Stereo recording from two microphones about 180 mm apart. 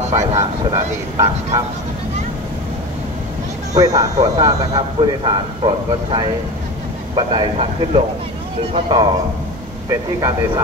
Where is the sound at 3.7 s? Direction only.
20° right (ahead or behind).